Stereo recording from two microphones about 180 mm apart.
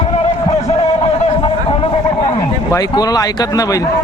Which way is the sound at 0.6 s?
30° left (ahead or behind).